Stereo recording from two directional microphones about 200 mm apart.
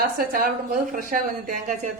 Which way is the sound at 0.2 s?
45° right (ahead or behind).